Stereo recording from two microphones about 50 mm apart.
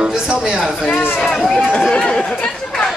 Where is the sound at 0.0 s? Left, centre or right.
Centre.